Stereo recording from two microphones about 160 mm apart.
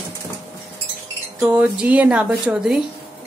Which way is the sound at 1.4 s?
5° right (ahead or behind).